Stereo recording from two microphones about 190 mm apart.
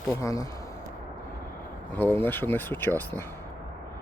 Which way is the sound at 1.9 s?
10° left (ahead or behind).